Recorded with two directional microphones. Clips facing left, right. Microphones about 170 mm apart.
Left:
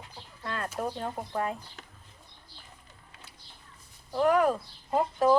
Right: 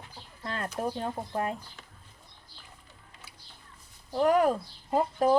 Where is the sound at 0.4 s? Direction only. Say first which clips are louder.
Right 1 dB; 25° right (ahead or behind).